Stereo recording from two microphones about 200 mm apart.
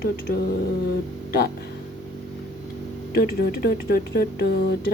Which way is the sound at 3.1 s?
50° left (ahead or behind).